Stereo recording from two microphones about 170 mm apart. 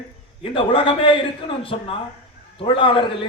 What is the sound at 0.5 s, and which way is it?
A man's voice, 30° left (ahead or behind).